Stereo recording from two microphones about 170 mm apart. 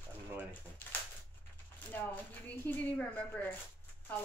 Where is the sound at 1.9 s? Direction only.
10° left (ahead or behind).